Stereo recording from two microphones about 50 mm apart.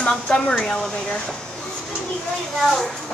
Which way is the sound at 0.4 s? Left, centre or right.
Centre.